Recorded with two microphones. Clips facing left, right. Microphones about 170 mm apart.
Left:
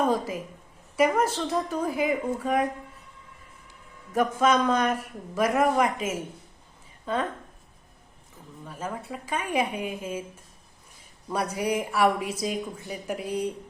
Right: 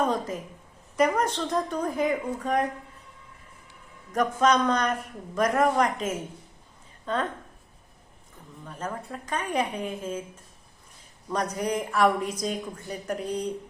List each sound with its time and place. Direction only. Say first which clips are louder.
0.0 s a woman's voice: left 1 dB; 5° left (ahead or behind)
4.1 s speech: even; 5° left (ahead or behind)
8.6 s speech: even; 5° left (ahead or behind)
11.3 s speech: left 1 dB; 10° left (ahead or behind)